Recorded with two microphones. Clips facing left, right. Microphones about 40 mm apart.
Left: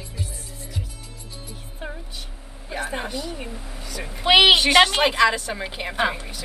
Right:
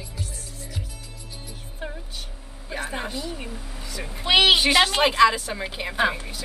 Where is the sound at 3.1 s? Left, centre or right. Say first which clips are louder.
Left 1 dB; centre.